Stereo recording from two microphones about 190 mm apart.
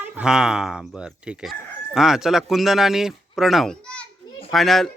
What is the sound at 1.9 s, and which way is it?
Speech, centre (ahead or behind).